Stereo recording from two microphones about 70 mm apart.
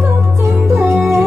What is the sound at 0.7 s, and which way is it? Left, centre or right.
Music, right.